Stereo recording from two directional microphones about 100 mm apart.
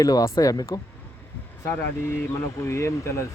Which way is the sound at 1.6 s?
25° left (ahead or behind).